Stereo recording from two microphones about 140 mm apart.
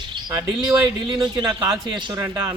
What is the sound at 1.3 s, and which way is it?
Speech, 30° right (ahead or behind).